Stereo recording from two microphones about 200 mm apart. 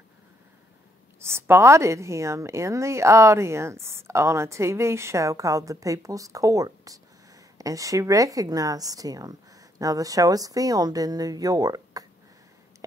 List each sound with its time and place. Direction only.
1.2 s a woman's voice: 10° right (ahead or behind)